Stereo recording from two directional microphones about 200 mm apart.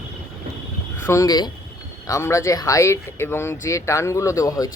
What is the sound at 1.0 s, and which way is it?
Speech, 15° left (ahead or behind).